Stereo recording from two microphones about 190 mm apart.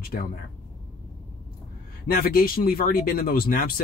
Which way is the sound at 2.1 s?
50° left (ahead or behind).